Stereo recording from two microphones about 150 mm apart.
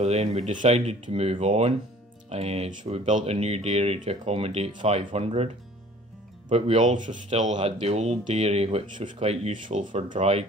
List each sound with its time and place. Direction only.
0.0 s speech: 45° right (ahead or behind)
6.5 s speech: 50° right (ahead or behind)